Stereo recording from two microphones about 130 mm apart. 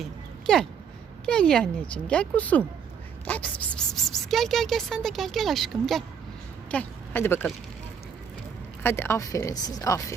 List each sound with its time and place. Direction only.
0.0 s a sound: 5° left (ahead or behind)
1.2 s speech: 5° left (ahead or behind)
6.7 s speech: 10° left (ahead or behind)
8.8 s a woman's voice: 15° left (ahead or behind)